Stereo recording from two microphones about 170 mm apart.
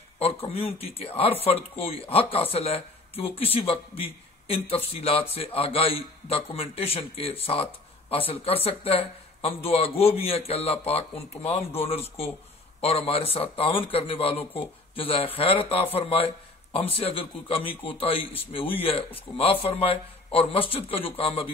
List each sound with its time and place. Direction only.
0.2 s a man's voice: 35° left (ahead or behind)